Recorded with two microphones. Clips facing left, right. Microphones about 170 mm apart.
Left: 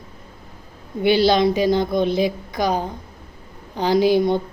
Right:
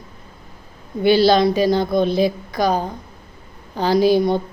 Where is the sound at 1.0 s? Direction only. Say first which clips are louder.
Right 2 dB; 15° left (ahead or behind).